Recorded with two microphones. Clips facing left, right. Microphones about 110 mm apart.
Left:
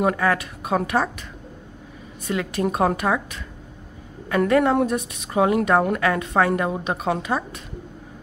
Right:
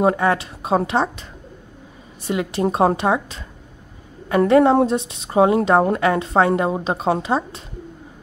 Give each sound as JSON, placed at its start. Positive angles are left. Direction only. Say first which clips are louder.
{"t": 0.0, "sound": "a woman's voice", "louder": "right 3 dB", "side_deg": -25}
{"t": 2.2, "sound": "a woman's voice", "louder": "right 3 dB", "side_deg": -25}